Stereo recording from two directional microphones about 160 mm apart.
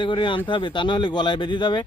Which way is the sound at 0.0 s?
30° left (ahead or behind).